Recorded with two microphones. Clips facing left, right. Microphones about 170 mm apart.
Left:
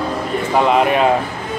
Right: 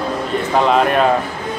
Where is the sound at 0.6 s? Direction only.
10° left (ahead or behind).